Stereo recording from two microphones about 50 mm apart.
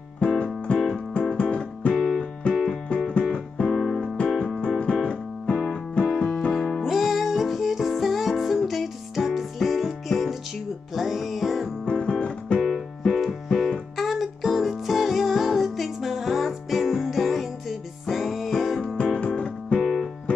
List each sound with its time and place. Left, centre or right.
0.2 s music: left
2.0 s music: centre
2.4 s music: left
3.6 s music: centre
4.4 s keyboard: centre
5.5 s music: left
6.0 s keyboard: left
6.5 s music: centre
11.8 s music: centre
12.6 s music: centre
14.0 s music: centre
19.1 s music: centre
19.8 s music: centre
20.3 s music: left